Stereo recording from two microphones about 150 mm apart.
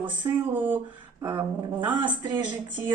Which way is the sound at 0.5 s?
10° right (ahead or behind).